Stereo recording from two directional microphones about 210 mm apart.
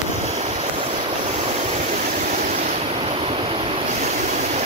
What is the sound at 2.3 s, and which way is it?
Waves, 35° right (ahead or behind).